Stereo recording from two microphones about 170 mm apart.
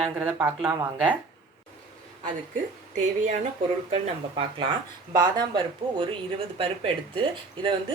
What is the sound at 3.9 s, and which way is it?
A woman's voice, 30° right (ahead or behind).